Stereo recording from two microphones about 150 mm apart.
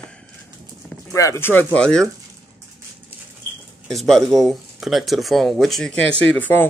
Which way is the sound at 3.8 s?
5° left (ahead or behind).